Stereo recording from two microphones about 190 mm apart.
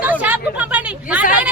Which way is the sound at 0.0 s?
10° right (ahead or behind).